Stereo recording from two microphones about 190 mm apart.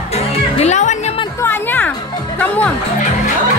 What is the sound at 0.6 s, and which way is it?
Music, 35° left (ahead or behind).